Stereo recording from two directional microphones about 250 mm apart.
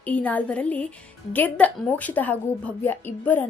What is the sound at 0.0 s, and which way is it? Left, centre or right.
A woman's voice, centre.